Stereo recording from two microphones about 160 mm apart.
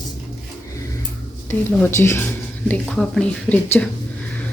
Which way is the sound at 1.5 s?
15° left (ahead or behind).